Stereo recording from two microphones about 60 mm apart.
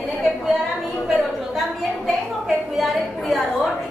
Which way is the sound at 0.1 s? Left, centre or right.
Centre.